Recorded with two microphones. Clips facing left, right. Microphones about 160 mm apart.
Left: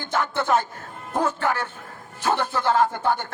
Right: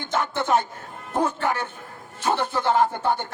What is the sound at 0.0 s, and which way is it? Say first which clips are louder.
A man's voice: even; 20° right (ahead or behind).